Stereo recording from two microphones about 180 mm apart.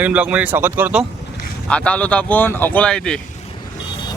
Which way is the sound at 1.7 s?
5° left (ahead or behind).